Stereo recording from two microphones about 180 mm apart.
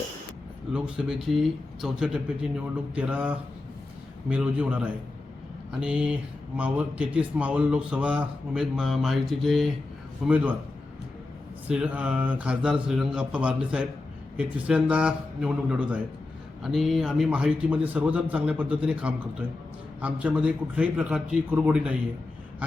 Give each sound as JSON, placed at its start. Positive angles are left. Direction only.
{"t": 0.7, "sound": "a man's voice", "side_deg": -5}
{"t": 11.7, "sound": "a man's voice", "side_deg": -5}